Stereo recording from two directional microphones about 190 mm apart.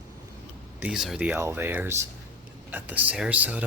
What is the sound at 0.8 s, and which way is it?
Speech, 5° right (ahead or behind).